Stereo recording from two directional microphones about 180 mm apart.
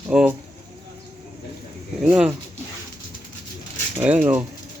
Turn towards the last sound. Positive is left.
turn(degrees=-10)  # may be behind; listen again after turning